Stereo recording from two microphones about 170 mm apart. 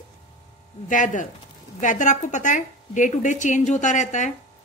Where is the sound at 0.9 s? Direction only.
50° left (ahead or behind).